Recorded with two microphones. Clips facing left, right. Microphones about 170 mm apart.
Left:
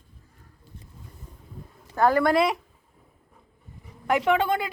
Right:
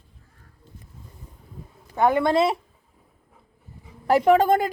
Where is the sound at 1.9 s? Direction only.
20° right (ahead or behind).